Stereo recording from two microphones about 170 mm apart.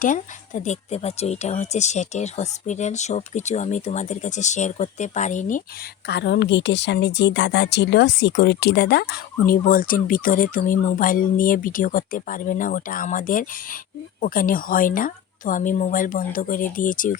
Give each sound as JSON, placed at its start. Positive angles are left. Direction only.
{"t": 0.0, "sound": "speech", "side_deg": 50}
{"t": 6.1, "sound": "a woman's voice", "side_deg": 85}